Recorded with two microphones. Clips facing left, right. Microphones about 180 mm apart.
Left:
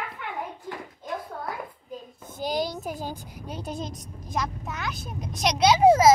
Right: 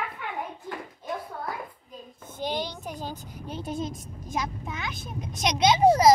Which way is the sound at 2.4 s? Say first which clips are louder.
Left 3 dB; 40° left (ahead or behind).